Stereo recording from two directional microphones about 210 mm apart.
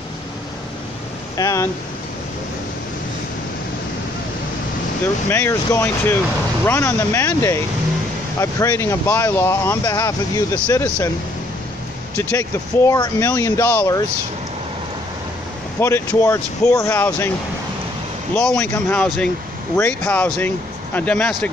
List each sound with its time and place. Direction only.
1.3 s speech: 15° left (ahead or behind)
5.0 s speech: 10° left (ahead or behind)
12.2 s speech: 15° left (ahead or behind)
15.8 s speech: 10° left (ahead or behind)
18.3 s speech: 5° left (ahead or behind)